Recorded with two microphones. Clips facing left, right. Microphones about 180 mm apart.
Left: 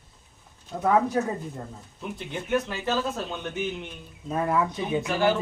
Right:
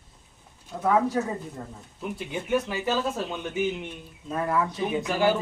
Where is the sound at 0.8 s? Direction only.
20° left (ahead or behind).